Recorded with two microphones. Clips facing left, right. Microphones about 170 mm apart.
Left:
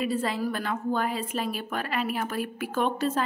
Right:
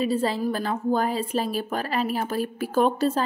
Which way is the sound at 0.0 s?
30° right (ahead or behind).